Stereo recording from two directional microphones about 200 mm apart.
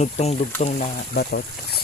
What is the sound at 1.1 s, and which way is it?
Speech, 50° left (ahead or behind).